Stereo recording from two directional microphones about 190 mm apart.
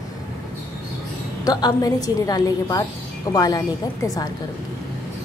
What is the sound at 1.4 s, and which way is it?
A woman's voice, 20° left (ahead or behind).